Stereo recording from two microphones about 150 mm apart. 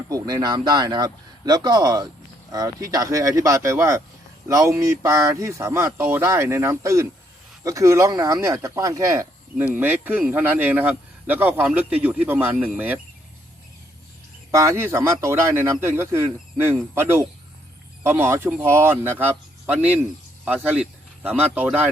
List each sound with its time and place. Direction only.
0.1 s speech: 25° right (ahead or behind)
14.5 s speech: 20° right (ahead or behind)